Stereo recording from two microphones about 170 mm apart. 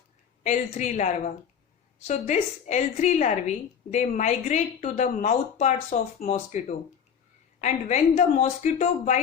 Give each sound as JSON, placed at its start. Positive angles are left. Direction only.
{"t": 0.4, "sound": "speech", "side_deg": 45}